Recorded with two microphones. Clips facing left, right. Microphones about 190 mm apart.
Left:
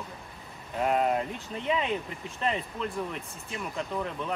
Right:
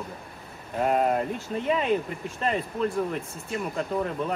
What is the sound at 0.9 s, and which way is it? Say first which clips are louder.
Speech: right 2 dB; 45° right (ahead or behind).